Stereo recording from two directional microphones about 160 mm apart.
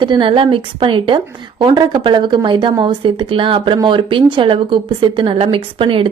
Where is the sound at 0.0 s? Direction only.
30° right (ahead or behind).